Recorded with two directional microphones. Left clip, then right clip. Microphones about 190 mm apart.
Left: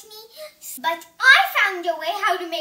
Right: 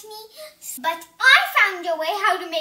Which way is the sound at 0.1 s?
20° left (ahead or behind).